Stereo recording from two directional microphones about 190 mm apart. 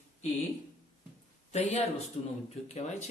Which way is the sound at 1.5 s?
35° left (ahead or behind).